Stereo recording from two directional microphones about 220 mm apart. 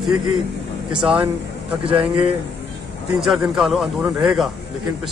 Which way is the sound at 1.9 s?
25° right (ahead or behind).